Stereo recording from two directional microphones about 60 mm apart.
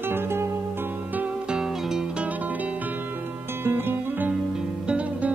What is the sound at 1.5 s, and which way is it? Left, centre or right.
Music, centre.